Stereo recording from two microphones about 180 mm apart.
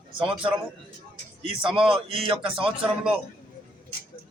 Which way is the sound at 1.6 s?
30° right (ahead or behind).